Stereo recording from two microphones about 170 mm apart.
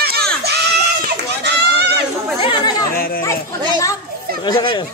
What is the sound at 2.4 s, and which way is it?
Chatter, 25° left (ahead or behind).